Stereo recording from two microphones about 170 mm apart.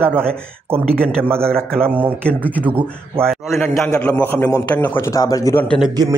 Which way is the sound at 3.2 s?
5° left (ahead or behind).